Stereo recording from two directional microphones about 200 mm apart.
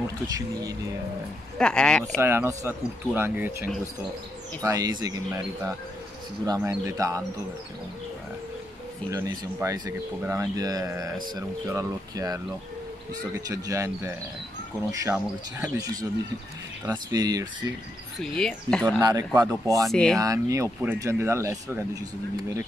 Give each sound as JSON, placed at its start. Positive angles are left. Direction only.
{"t": 1.6, "sound": "speech", "side_deg": 5}
{"t": 2.1, "sound": "speech", "side_deg": -10}
{"t": 4.6, "sound": "speech", "side_deg": -20}
{"t": 9.1, "sound": "speech", "side_deg": -15}
{"t": 16.8, "sound": "speech", "side_deg": -20}
{"t": 18.2, "sound": "speech", "side_deg": 5}
{"t": 18.9, "sound": "speech", "side_deg": -20}
{"t": 19.9, "sound": "speech", "side_deg": 0}
{"t": 20.2, "sound": "speech", "side_deg": -15}